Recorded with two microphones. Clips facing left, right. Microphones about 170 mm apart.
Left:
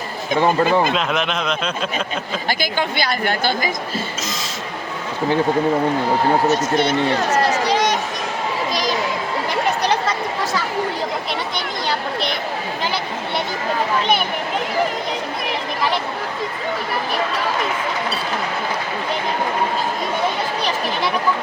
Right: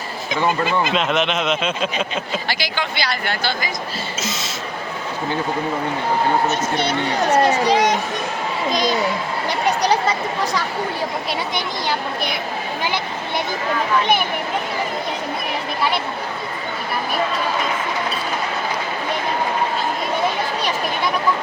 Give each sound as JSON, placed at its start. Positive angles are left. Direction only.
{"t": 0.4, "sound": "speech", "side_deg": 45}
{"t": 0.9, "sound": "speech", "side_deg": 0}
{"t": 2.5, "sound": "speech", "side_deg": 50}
{"t": 9.8, "sound": "a sound", "side_deg": -10}